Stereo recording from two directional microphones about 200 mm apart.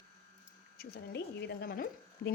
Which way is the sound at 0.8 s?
55° left (ahead or behind).